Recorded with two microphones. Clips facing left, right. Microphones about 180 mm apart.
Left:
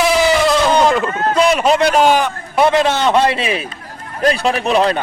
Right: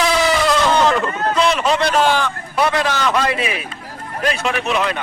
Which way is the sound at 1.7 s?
10° left (ahead or behind).